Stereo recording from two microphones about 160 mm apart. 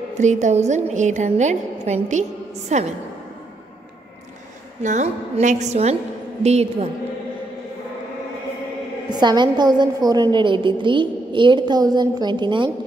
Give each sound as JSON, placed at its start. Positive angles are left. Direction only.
{"t": 0.2, "sound": "a woman's voice", "side_deg": -45}
{"t": 4.8, "sound": "a woman's voice", "side_deg": -45}
{"t": 9.1, "sound": "a woman's voice", "side_deg": -25}